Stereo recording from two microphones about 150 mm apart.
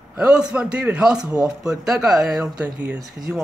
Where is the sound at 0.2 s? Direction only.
5° right (ahead or behind).